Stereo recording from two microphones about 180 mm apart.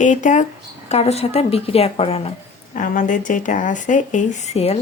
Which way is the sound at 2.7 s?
45° left (ahead or behind).